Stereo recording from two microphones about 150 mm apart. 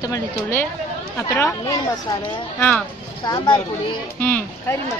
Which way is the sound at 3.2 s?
30° left (ahead or behind).